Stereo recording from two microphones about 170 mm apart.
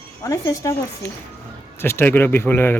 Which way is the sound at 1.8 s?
15° left (ahead or behind).